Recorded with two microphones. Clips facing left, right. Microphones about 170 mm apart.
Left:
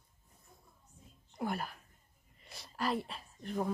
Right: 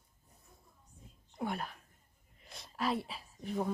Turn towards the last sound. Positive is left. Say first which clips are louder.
# even
turn(degrees=0)  # may be behind; listen again after turning